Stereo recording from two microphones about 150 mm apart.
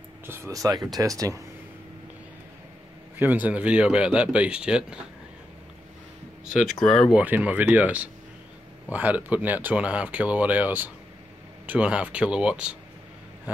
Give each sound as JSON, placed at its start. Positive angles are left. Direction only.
{"t": 0.3, "sound": "speech", "side_deg": -20}
{"t": 3.2, "sound": "speech", "side_deg": -10}
{"t": 6.5, "sound": "speech", "side_deg": 0}
{"t": 7.2, "sound": "speech", "side_deg": -10}